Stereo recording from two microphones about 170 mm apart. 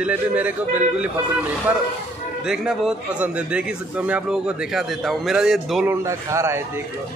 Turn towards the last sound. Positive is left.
turn(degrees=-15)  # may be behind; listen again after turning